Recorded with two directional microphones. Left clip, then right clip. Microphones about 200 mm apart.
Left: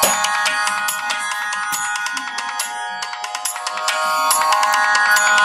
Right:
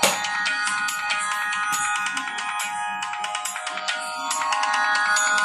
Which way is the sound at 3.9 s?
50° left (ahead or behind).